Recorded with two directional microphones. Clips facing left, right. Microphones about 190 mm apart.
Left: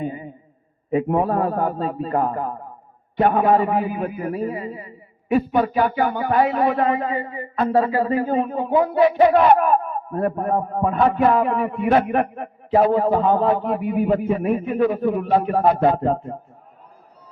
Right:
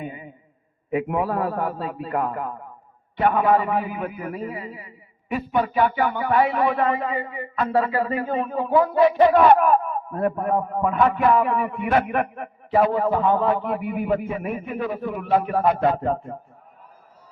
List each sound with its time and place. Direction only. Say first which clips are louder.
0.0 s a sound: left 6 dB; 35° left (ahead or behind)
0.9 s a man's voice: left 4 dB; 30° left (ahead or behind)
10.1 s a man's voice: left 1 dB; 35° left (ahead or behind)